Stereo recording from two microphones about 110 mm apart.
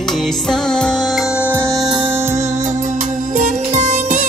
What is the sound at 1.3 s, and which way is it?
Music, 20° right (ahead or behind).